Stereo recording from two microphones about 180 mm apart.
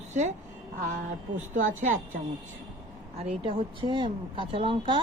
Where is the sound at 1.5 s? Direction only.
45° right (ahead or behind).